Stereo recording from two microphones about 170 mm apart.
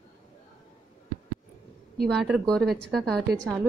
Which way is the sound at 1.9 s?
Centre (ahead or behind).